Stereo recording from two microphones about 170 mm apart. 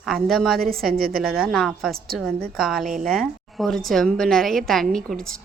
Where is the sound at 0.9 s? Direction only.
60° right (ahead or behind).